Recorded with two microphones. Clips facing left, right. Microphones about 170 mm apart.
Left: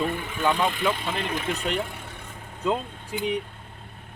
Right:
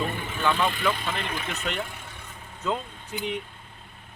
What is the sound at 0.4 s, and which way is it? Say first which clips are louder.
Speech: left 1 dB; 15° left (ahead or behind).